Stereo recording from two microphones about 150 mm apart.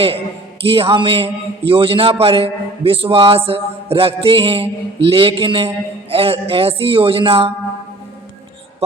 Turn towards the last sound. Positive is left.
turn(degrees=-35)  # may be behind; listen again after turning